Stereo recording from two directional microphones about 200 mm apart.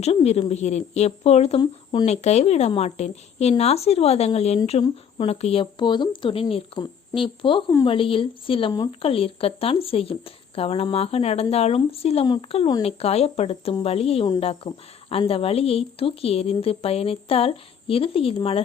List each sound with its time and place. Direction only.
0.0 s speech: 30° left (ahead or behind)